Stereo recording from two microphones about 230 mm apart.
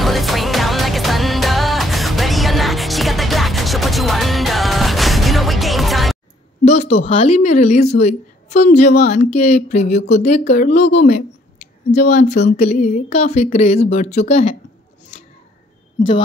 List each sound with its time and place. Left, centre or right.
0.0 s music: centre
6.6 s a woman's voice: left